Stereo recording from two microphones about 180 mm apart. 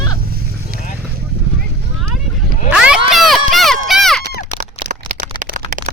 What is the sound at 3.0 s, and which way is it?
Run, centre (ahead or behind).